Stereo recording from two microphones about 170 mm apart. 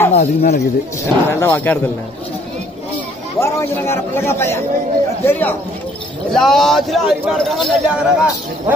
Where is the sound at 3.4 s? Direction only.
15° left (ahead or behind).